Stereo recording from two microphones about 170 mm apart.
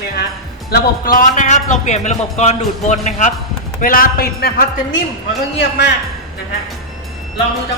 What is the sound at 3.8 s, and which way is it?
Speech, 55° left (ahead or behind).